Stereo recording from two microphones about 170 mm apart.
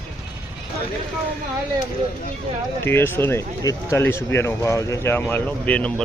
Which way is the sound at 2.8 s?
15° left (ahead or behind).